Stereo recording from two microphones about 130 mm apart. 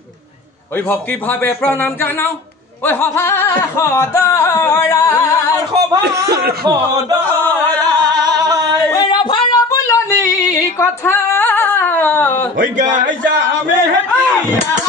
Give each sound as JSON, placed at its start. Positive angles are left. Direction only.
{"t": 1.4, "sound": "speech", "side_deg": 15}
{"t": 2.9, "sound": "a sound", "side_deg": 15}
{"t": 5.8, "sound": "speech", "side_deg": -30}
{"t": 7.2, "sound": "singing", "side_deg": 10}
{"t": 8.9, "sound": "female singing", "side_deg": 35}
{"t": 12.5, "sound": "a man's voice", "side_deg": -85}